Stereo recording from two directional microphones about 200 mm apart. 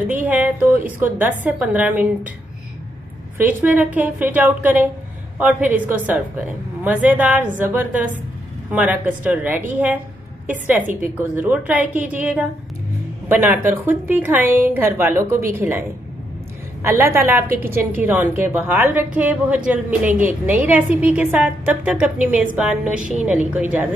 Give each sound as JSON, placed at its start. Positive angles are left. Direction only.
{"t": 0.1, "sound": "a woman's voice", "side_deg": -10}
{"t": 3.6, "sound": "a woman's voice", "side_deg": -10}
{"t": 16.8, "sound": "a woman's voice", "side_deg": -10}